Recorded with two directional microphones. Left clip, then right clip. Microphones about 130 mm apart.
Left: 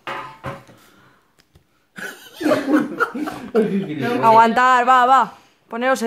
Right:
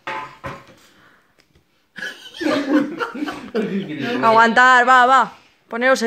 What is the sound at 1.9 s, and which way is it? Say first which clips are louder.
Laughter: right 2 dB; 35° left (ahead or behind).